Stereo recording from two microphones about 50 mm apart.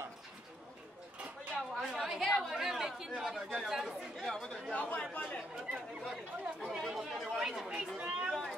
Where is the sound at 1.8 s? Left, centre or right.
Centre.